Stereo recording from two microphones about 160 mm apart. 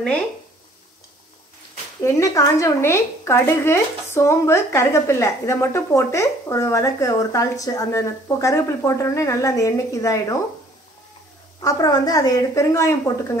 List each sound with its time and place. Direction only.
2.0 s speech: 20° left (ahead or behind)
11.6 s speech: 25° left (ahead or behind)